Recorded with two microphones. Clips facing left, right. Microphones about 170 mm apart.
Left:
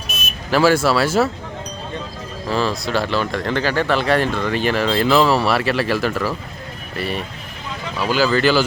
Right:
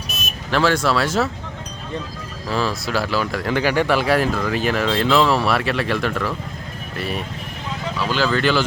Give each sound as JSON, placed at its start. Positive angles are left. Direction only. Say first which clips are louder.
{"t": 0.1, "sound": "vehicle", "louder": "left 2 dB", "side_deg": -40}
{"t": 0.5, "sound": "speech", "louder": "left 3 dB", "side_deg": 5}
{"t": 2.5, "sound": "speech", "louder": "left 2 dB", "side_deg": 0}